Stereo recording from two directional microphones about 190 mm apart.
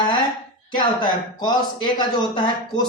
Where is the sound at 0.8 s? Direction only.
25° left (ahead or behind).